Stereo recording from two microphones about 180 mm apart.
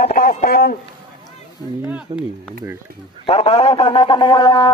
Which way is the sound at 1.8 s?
10° right (ahead or behind).